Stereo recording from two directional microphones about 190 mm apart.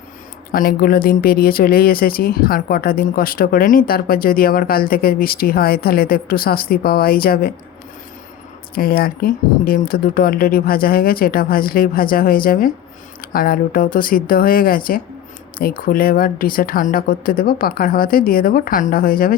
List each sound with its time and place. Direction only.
0.5 s speech: 50° left (ahead or behind)
8.7 s speech: 50° left (ahead or behind)